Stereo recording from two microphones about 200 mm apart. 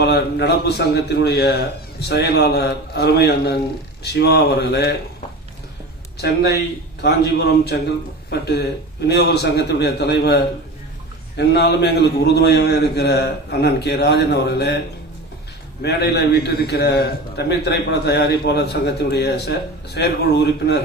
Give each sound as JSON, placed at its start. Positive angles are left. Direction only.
{"t": 0.0, "sound": "a man's voice", "side_deg": 55}
{"t": 6.2, "sound": "a man's voice", "side_deg": 55}
{"t": 15.8, "sound": "a man's voice", "side_deg": 55}